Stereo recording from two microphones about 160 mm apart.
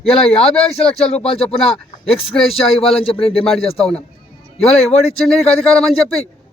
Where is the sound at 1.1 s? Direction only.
35° left (ahead or behind).